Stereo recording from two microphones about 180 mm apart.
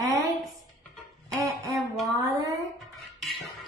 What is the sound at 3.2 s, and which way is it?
Scratching, centre (ahead or behind).